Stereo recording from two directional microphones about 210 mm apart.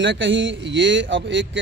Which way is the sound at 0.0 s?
60° right (ahead or behind).